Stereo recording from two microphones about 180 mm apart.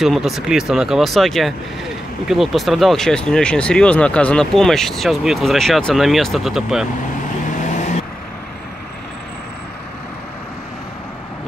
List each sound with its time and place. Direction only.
0.0 s speech: centre (ahead or behind)
7.5 s vehicle: 40° left (ahead or behind)